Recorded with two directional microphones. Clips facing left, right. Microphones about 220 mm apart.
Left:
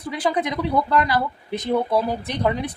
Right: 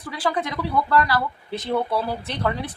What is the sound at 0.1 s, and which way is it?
A woman's voice, 20° left (ahead or behind).